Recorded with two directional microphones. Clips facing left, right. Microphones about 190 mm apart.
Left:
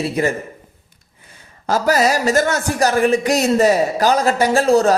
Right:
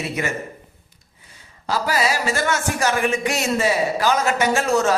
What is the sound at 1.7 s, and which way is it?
A man's voice, 45° left (ahead or behind).